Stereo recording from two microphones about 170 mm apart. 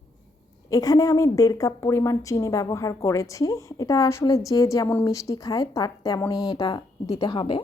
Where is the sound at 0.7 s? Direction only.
20° left (ahead or behind).